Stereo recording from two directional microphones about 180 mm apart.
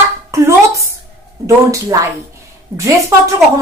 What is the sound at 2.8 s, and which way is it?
Speech, 15° right (ahead or behind).